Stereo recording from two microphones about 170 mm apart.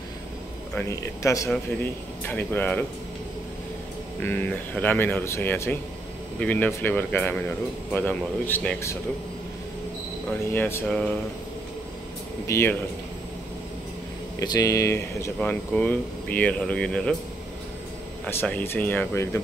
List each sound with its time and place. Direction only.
0.7 s speech: 20° left (ahead or behind)
4.2 s speech: 10° left (ahead or behind)
10.5 s speech: 10° left (ahead or behind)
12.4 s speech: 15° left (ahead or behind)
14.4 s speech: 20° left (ahead or behind); by 17.2 s 5° left (ahead or behind)
18.2 s speech: 10° left (ahead or behind)